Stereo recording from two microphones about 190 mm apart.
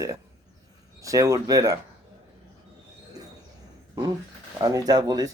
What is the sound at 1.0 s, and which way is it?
Speech, 15° right (ahead or behind).